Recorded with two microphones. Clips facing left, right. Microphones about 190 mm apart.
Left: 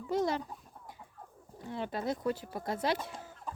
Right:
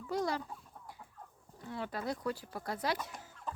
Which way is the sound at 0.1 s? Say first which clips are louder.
Left 4 dB; 20° left (ahead or behind).